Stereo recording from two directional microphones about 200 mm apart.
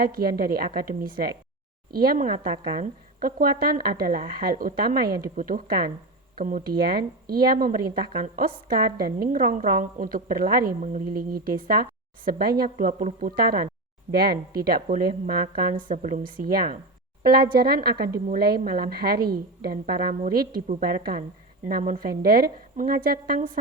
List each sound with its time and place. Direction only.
0.0 s a woman's voice: 50° right (ahead or behind)
12.8 s speech: 40° right (ahead or behind)
14.6 s a woman's voice: 50° right (ahead or behind)